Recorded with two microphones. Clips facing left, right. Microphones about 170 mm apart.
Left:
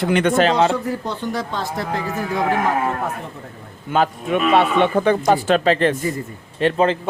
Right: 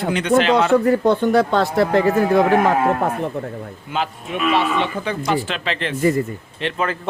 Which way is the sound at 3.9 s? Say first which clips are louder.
Left 6 dB; 50° left (ahead or behind).